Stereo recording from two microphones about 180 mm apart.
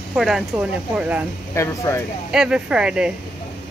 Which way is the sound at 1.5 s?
15° left (ahead or behind).